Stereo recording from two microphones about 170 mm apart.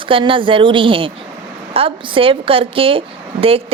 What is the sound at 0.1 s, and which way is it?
A woman's voice, 30° right (ahead or behind).